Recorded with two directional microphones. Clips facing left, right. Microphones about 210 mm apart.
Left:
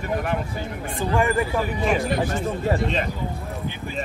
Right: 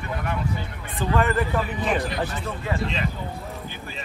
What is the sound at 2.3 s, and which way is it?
Speech, 45° left (ahead or behind).